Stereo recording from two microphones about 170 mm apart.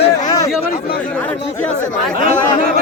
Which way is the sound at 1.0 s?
10° left (ahead or behind).